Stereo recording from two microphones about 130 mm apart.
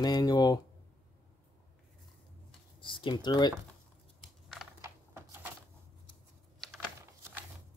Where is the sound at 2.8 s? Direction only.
40° left (ahead or behind).